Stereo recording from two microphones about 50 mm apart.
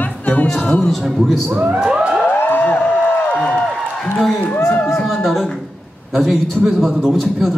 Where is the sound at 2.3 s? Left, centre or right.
Left.